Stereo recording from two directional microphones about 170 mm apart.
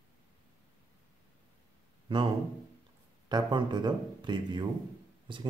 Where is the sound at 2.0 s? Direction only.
25° right (ahead or behind).